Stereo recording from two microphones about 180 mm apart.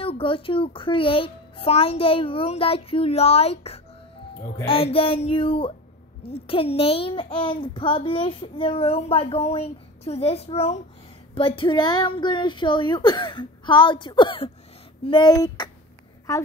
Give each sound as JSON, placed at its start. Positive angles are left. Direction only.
{"t": 0.0, "sound": "a child's voice", "side_deg": 30}